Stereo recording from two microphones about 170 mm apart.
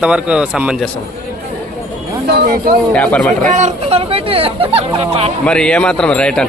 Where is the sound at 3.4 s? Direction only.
45° right (ahead or behind).